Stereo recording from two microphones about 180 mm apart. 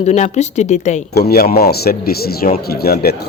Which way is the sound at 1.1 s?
60° left (ahead or behind).